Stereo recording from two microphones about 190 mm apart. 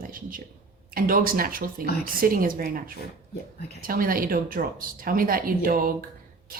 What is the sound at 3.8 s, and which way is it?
A woman's voice, 50° right (ahead or behind).